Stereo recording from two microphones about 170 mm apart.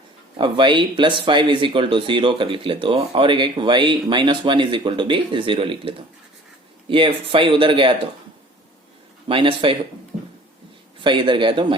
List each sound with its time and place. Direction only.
0.3 s speech: 30° right (ahead or behind)
6.9 s speech: 30° right (ahead or behind)
9.3 s speech: 30° right (ahead or behind)
11.0 s speech: 30° right (ahead or behind)